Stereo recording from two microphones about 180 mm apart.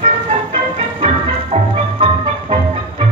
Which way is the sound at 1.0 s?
30° right (ahead or behind).